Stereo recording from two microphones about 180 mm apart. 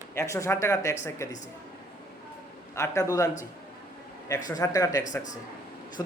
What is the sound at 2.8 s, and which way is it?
A man's voice, 15° left (ahead or behind).